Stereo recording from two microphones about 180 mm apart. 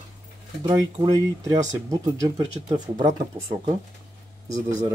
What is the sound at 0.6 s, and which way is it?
Speech, 25° right (ahead or behind).